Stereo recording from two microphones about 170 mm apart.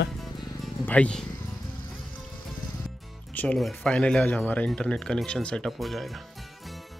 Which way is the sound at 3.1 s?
5° left (ahead or behind).